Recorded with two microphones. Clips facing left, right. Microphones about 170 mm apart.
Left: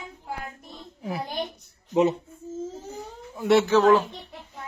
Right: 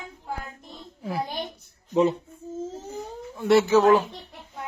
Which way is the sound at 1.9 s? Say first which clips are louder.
Even; 20° left (ahead or behind).